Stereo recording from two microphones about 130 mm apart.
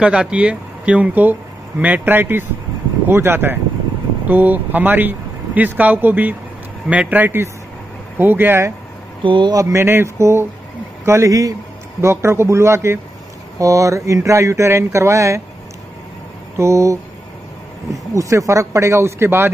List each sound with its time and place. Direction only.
0.0 s speech: 10° right (ahead or behind)
9.2 s speech: 40° right (ahead or behind)
16.5 s speech: 25° right (ahead or behind)